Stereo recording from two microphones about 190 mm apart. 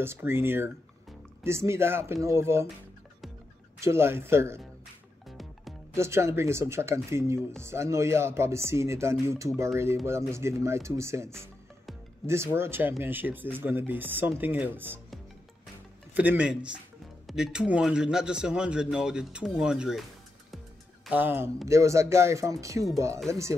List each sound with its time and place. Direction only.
0.0 s speech: 10° right (ahead or behind)
3.8 s speech: 15° right (ahead or behind)
5.9 s speech: 15° right (ahead or behind)
16.2 s speech: 5° right (ahead or behind)
21.1 s speech: 10° right (ahead or behind)